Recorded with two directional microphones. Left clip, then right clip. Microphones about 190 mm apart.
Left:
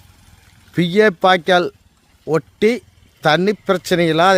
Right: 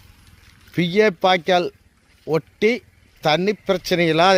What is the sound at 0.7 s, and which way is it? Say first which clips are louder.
Speech: left 3 dB; 15° left (ahead or behind).